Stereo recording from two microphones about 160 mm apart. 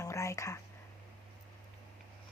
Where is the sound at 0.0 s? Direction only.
20° left (ahead or behind).